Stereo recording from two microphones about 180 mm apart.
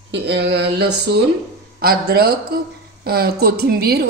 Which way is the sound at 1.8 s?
60° right (ahead or behind).